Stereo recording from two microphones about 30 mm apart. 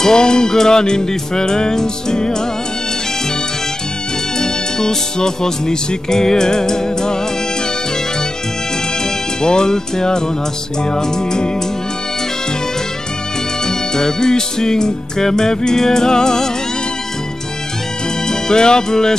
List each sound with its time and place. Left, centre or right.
0.0 s music: left
4.4 s music: left
9.4 s music: left
13.7 s music: centre
18.3 s music: left